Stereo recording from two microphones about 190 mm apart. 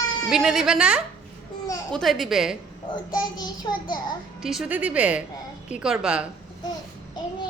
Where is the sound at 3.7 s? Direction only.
25° left (ahead or behind).